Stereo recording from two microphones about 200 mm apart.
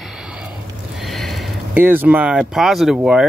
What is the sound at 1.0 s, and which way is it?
Speech, centre (ahead or behind).